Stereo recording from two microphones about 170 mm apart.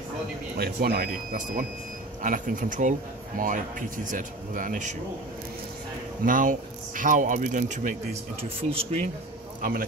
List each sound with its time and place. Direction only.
0.6 s speech: 65° right (ahead or behind); by 4.9 s 50° right (ahead or behind)
6.2 s speech: 50° right (ahead or behind); by 9.0 s 35° right (ahead or behind)
9.6 s a man's voice: 55° right (ahead or behind)